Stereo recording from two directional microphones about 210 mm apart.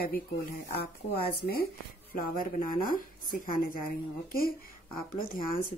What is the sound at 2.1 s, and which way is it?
A woman's voice, 40° left (ahead or behind).